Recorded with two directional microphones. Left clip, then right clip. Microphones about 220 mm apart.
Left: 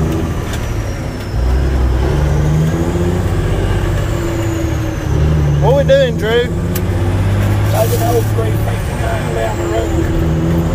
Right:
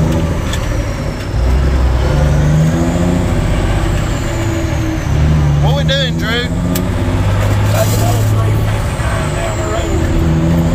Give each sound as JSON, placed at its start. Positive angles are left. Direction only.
{"t": 5.7, "sound": "vehicle", "side_deg": 15}